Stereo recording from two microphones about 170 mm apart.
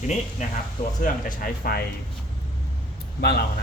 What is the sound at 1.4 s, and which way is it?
Speech, 60° left (ahead or behind).